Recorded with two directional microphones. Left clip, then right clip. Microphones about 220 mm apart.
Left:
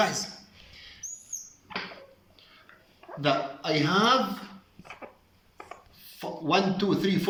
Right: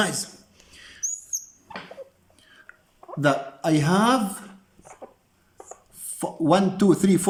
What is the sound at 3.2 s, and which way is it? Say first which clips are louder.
Speech: right 4 dB; 60° right (ahead or behind).